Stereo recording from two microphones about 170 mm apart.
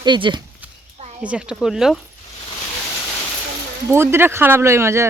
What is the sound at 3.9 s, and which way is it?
Speech, 15° right (ahead or behind).